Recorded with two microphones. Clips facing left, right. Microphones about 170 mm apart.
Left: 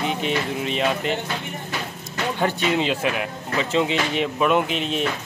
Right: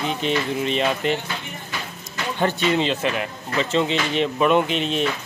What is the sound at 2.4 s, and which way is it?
Speech, 10° left (ahead or behind).